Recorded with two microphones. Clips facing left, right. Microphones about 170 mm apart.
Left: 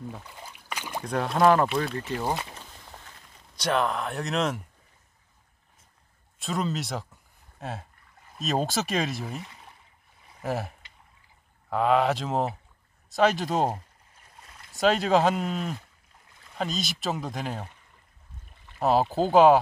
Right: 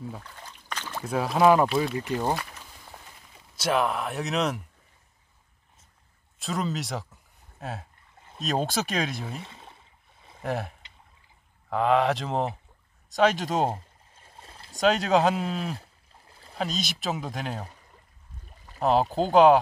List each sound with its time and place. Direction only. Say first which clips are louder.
0.2 s a sound: left 1 dB; 10° left (ahead or behind)
1.0 s speech: right 1 dB; 5° right (ahead or behind)
2.3 s speech: even; 20° left (ahead or behind)
3.5 s speech: right 1 dB; 5° right (ahead or behind)
6.4 s speech: left 1 dB; centre (ahead or behind)
9.4 s a sound: right 1 dB; 25° right (ahead or behind)
10.4 s speech: even; centre (ahead or behind)
11.7 s speech: even; centre (ahead or behind)
13.7 s stream: even; 30° right (ahead or behind)
14.8 s speech: even; centre (ahead or behind)
15.8 s a sound: right 3 dB; 35° right (ahead or behind)
16.5 s speech: even; centre (ahead or behind)
18.8 s speech: even; 5° left (ahead or behind)